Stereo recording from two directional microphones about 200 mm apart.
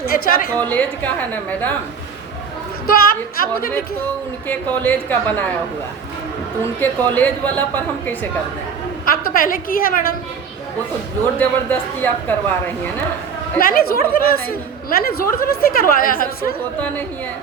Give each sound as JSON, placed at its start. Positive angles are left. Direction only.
{"t": 0.1, "sound": "a woman's voice", "side_deg": 45}
{"t": 0.7, "sound": "a woman's voice", "side_deg": 10}
{"t": 2.8, "sound": "a woman's voice", "side_deg": 45}
{"t": 4.4, "sound": "a woman's voice", "side_deg": 10}
{"t": 6.7, "sound": "a woman's voice", "side_deg": 10}
{"t": 9.0, "sound": "a woman's voice", "side_deg": 45}
{"t": 11.3, "sound": "a woman's voice", "side_deg": 10}
{"t": 13.6, "sound": "a woman's voice", "side_deg": 45}